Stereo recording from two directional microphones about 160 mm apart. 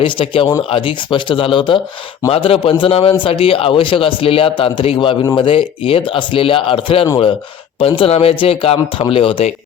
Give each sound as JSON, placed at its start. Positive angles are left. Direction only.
{"t": 0.0, "sound": "a man's voice", "side_deg": 30}